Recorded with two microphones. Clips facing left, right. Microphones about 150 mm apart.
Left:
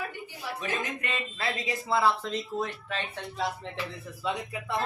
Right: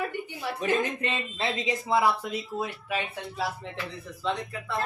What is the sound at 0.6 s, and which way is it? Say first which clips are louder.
Speech: right 8 dB; 35° right (ahead or behind).